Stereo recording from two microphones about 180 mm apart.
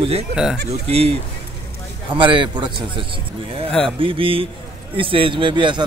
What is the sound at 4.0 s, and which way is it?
A man's voice, 30° right (ahead or behind).